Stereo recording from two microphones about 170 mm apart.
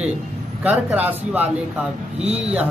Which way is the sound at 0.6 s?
10° right (ahead or behind).